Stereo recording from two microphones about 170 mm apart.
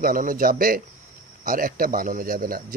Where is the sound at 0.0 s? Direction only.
55° right (ahead or behind).